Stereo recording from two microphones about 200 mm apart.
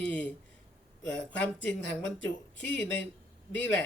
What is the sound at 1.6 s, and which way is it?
Speech, 65° left (ahead or behind).